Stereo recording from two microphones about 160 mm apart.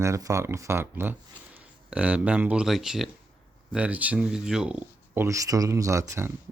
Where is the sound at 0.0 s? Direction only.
20° right (ahead or behind).